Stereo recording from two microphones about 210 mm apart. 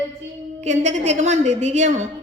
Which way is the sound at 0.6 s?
35° right (ahead or behind).